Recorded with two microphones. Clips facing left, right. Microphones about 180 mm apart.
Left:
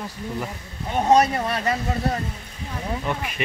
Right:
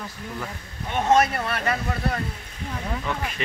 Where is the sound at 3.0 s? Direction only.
15° left (ahead or behind).